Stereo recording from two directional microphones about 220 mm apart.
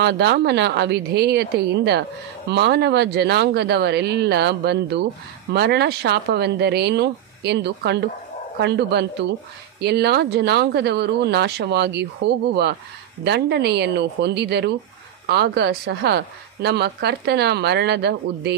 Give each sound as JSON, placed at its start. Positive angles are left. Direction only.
{"t": 0.0, "sound": "speech", "side_deg": -50}